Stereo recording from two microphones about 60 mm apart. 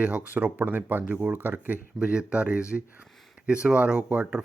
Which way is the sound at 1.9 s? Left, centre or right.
Centre.